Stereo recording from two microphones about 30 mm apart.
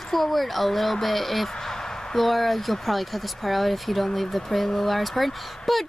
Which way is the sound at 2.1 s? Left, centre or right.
Centre.